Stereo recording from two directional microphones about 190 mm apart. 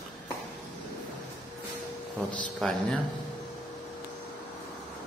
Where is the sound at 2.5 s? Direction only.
Centre (ahead or behind).